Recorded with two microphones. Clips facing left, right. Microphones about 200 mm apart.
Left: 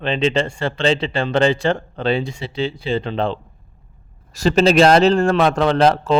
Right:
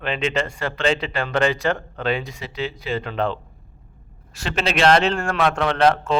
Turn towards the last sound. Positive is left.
turn(degrees=35)  # may be behind; listen again after turning